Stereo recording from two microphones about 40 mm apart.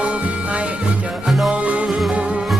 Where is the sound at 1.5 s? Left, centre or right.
Right.